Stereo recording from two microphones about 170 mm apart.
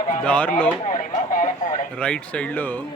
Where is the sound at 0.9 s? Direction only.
50° left (ahead or behind).